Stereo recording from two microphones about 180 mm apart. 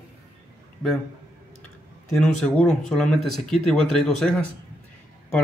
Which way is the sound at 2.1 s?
5° left (ahead or behind).